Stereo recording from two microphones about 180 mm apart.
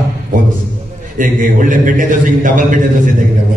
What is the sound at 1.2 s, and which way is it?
A man's voice, 45° right (ahead or behind).